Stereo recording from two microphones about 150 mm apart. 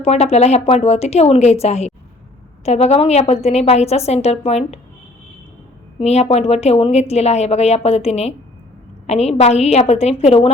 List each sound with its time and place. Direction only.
0.0 s a woman's voice: 45° left (ahead or behind)
6.0 s a woman's voice: 45° left (ahead or behind)